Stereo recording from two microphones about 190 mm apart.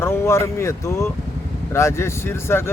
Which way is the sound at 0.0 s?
15° left (ahead or behind).